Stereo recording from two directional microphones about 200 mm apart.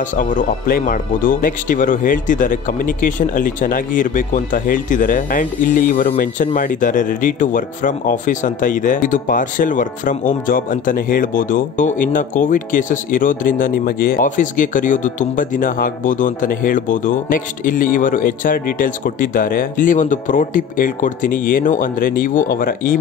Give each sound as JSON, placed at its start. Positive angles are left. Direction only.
{"t": 0.1, "sound": "speech", "side_deg": 40}